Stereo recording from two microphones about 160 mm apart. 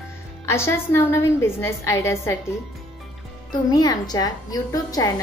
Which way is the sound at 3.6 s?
25° left (ahead or behind).